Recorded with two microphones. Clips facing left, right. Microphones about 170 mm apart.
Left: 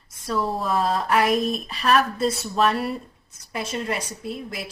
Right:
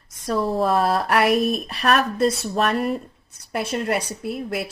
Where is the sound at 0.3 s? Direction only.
65° right (ahead or behind).